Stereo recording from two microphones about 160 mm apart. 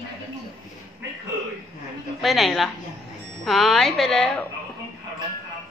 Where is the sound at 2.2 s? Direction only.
Centre (ahead or behind).